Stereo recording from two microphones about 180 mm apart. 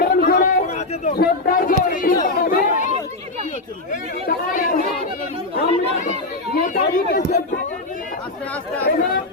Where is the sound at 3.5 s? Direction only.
45° left (ahead or behind).